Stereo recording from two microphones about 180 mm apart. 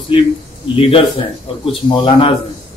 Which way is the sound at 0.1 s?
30° left (ahead or behind).